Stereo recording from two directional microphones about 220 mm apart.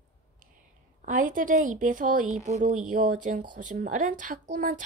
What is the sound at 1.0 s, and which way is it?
Speech, 35° right (ahead or behind).